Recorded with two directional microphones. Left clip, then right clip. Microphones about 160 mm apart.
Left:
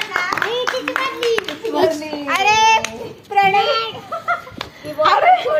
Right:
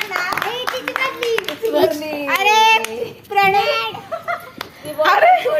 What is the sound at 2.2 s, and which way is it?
Child singing, 20° right (ahead or behind).